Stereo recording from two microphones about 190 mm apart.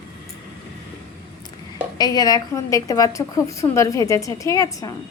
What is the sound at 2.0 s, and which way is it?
A woman's voice, 20° left (ahead or behind).